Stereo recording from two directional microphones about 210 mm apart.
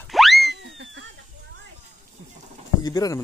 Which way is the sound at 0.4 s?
55° right (ahead or behind).